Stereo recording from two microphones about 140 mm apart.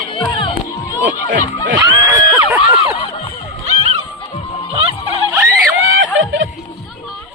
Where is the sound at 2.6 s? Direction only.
40° left (ahead or behind).